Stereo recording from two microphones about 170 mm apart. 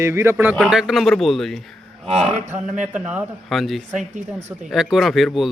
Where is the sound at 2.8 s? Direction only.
10° right (ahead or behind).